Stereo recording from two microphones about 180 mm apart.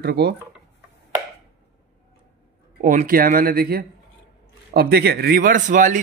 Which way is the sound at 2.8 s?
45° right (ahead or behind).